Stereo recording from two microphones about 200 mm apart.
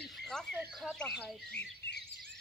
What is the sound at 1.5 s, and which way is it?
Bird, 55° left (ahead or behind).